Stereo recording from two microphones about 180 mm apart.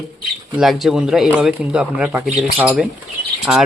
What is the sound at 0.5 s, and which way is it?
Speech, centre (ahead or behind).